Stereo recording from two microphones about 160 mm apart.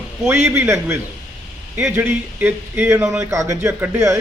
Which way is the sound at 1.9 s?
10° right (ahead or behind).